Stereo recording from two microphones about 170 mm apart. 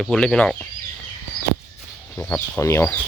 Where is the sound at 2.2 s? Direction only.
10° left (ahead or behind).